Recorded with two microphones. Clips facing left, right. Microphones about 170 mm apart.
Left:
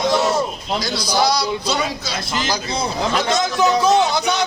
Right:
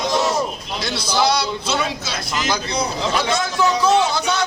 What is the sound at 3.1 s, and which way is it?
Speech, 20° left (ahead or behind).